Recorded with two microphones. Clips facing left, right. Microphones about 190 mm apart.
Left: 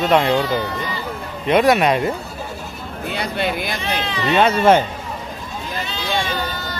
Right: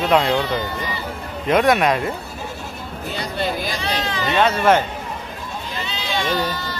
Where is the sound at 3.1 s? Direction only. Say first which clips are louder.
Left 2 dB; 65° left (ahead or behind).